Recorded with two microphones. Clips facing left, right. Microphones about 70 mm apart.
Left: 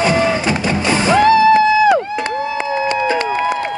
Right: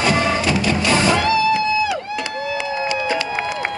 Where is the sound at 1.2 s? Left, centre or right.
Left.